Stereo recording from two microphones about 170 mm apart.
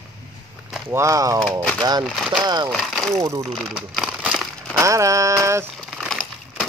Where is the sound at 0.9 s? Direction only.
20° right (ahead or behind).